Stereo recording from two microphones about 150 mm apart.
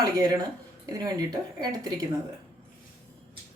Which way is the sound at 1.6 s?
30° right (ahead or behind).